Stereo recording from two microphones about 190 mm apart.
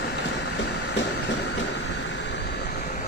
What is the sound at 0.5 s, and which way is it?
Train, 70° left (ahead or behind).